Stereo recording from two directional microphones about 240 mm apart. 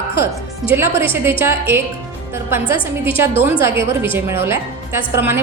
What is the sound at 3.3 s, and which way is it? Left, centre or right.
A woman's voice, centre.